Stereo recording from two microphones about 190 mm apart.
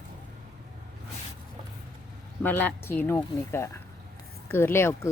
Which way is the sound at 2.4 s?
10° left (ahead or behind).